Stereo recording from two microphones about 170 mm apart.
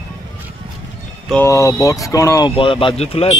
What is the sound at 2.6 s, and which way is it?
Speech, 30° left (ahead or behind).